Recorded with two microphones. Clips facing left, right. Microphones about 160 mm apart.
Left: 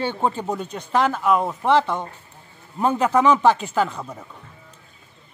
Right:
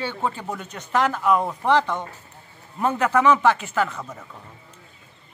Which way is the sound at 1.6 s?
10° left (ahead or behind).